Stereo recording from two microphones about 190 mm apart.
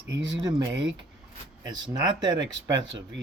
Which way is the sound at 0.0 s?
70° right (ahead or behind).